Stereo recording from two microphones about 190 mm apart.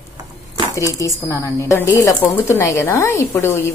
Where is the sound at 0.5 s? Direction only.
15° left (ahead or behind).